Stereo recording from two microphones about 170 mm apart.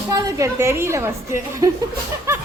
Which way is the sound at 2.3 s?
15° right (ahead or behind).